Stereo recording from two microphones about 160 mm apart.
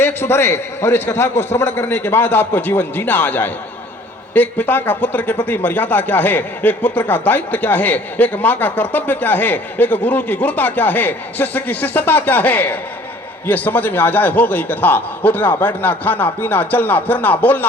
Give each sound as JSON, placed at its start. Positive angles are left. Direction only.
{"t": 0.0, "sound": "speech", "side_deg": 15}